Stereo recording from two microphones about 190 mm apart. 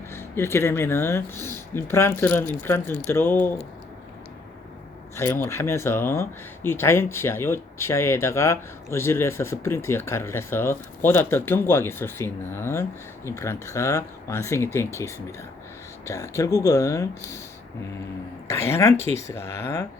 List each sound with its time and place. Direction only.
0.1 s speech: 15° left (ahead or behind)
5.1 s speech: 10° left (ahead or behind)
18.4 s speech: 15° left (ahead or behind)